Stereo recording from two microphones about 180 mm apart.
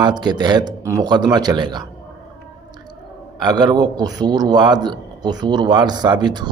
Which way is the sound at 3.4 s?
25° right (ahead or behind).